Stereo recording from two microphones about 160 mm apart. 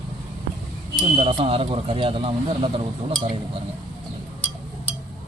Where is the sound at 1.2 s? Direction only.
35° right (ahead or behind).